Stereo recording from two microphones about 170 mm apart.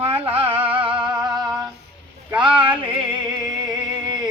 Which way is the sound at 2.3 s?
30° right (ahead or behind).